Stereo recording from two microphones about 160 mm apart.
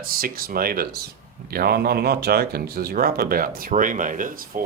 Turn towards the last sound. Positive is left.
turn(degrees=-60)  # may be behind; listen again after turning